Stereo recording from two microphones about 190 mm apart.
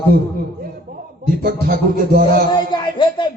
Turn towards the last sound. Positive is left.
turn(degrees=25)  # may be behind; listen again after turning